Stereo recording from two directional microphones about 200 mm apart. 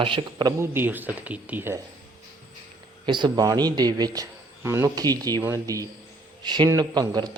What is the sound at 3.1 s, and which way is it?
A man's voice, 20° right (ahead or behind).